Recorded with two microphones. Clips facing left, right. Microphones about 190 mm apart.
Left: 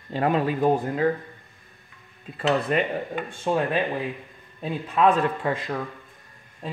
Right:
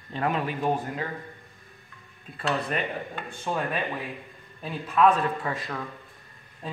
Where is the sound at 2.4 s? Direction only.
20° left (ahead or behind).